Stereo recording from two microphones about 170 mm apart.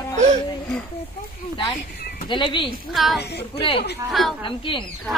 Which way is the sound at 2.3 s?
30° left (ahead or behind).